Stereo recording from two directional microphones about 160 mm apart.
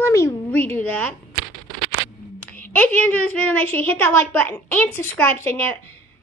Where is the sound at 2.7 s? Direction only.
10° left (ahead or behind).